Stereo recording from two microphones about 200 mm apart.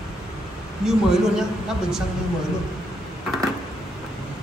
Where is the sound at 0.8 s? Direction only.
Centre (ahead or behind).